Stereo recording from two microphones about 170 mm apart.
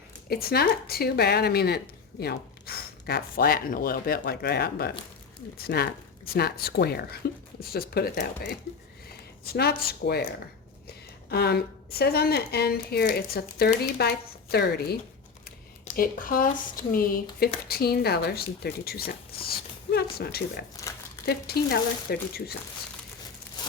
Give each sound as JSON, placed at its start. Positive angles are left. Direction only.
{"t": 0.3, "sound": "a woman's voice", "side_deg": 65}
{"t": 16.0, "sound": "speech", "side_deg": 55}
{"t": 20.8, "sound": "crumpling", "side_deg": 20}
{"t": 21.2, "sound": "a woman's voice", "side_deg": 65}